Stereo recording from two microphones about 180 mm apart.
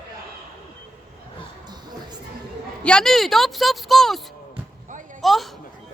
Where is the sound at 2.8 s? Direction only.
5° left (ahead or behind).